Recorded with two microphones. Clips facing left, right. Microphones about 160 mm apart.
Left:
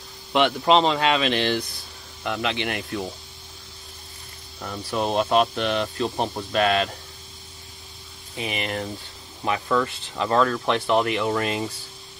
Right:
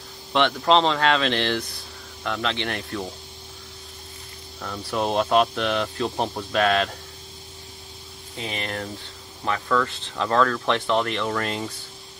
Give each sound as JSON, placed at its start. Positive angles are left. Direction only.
{"t": 0.3, "sound": "speech", "side_deg": 10}
{"t": 4.6, "sound": "speech", "side_deg": 5}
{"t": 8.4, "sound": "speech", "side_deg": 10}